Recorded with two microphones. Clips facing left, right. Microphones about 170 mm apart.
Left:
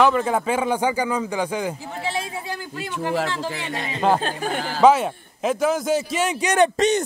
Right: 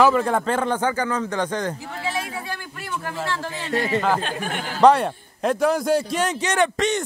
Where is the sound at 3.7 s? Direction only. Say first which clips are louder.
Right 7 dB; 75° right (ahead or behind).